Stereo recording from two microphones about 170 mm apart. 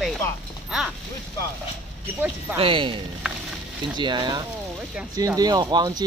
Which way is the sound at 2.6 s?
30° right (ahead or behind).